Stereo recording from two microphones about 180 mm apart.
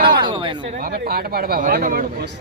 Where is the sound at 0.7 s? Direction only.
55° right (ahead or behind).